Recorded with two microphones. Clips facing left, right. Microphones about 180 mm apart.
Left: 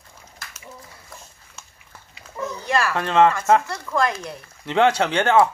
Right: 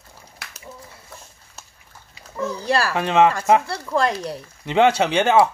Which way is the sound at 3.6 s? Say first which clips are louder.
Right 2 dB; 30° right (ahead or behind).